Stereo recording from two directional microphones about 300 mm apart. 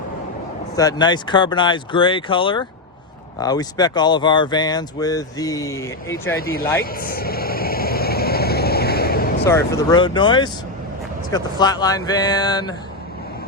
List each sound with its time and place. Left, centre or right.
0.8 s speech: centre
6.4 s speech: left
6.8 s vehicle: left
9.4 s speech: centre